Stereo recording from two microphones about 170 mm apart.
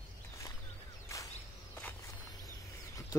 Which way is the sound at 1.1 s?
20° left (ahead or behind).